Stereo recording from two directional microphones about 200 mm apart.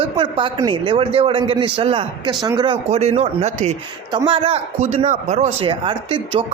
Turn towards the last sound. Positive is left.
turn(degrees=-25)  # may be behind; listen again after turning